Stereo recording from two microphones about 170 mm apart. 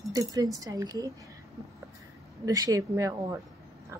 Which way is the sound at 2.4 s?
20° right (ahead or behind).